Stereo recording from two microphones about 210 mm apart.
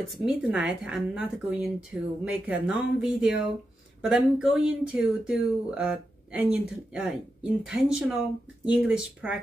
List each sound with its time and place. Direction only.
0.1 s speech: centre (ahead or behind)